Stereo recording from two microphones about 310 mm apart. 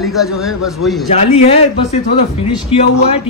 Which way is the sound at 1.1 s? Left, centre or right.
Centre.